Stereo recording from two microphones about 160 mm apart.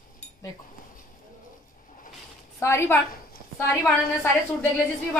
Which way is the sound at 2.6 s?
15° left (ahead or behind).